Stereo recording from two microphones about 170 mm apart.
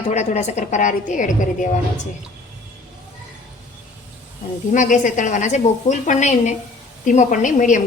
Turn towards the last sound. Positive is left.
turn(degrees=45)  # may be behind; listen again after turning